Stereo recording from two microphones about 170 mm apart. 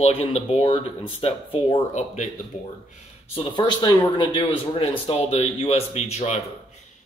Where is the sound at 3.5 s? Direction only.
25° left (ahead or behind).